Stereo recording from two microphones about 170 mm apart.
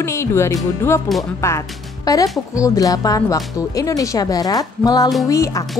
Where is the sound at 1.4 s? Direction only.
15° left (ahead or behind).